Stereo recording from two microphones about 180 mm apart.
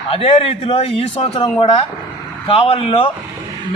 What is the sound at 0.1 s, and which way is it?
Speech, 35° left (ahead or behind).